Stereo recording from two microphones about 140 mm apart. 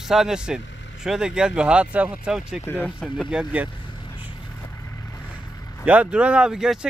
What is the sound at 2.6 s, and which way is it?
Speech, 15° left (ahead or behind).